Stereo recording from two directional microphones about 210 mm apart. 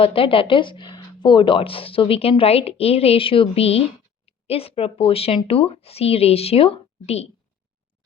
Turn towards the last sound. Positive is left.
turn(degrees=30)  # may be behind; listen again after turning